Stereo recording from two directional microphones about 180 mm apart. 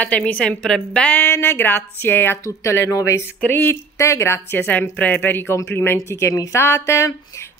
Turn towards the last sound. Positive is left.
turn(degrees=15)  # may be behind; listen again after turning